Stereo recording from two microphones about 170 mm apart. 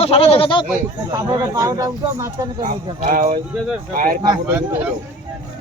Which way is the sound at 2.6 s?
50° right (ahead or behind).